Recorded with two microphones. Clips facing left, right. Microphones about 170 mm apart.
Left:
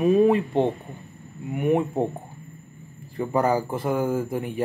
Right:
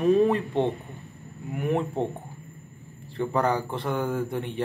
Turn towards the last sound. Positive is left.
turn(degrees=5)  # may be behind; listen again after turning